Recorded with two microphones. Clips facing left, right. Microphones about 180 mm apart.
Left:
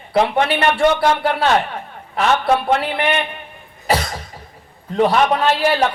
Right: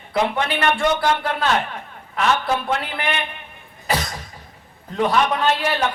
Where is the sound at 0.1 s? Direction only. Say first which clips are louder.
Left 5 dB; 30° left (ahead or behind).